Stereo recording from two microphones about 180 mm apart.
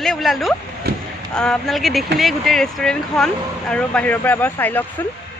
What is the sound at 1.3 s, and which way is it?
Speech, 5° left (ahead or behind).